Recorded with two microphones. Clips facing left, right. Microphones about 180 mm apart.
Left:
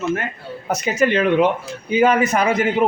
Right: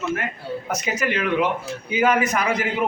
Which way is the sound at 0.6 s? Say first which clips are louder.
Left 8 dB; 30° left (ahead or behind).